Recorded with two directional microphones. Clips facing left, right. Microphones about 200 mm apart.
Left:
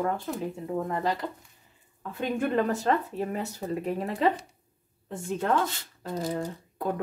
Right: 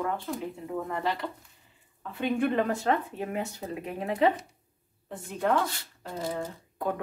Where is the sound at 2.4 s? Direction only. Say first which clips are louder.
Left 2 dB; 40° left (ahead or behind).